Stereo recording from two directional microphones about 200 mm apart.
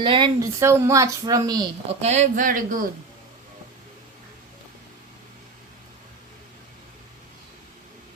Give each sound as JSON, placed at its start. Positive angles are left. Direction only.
{"t": 0.0, "sound": "speech", "side_deg": -25}
{"t": 0.6, "sound": "a woman's voice", "side_deg": -15}
{"t": 1.9, "sound": "speech", "side_deg": -35}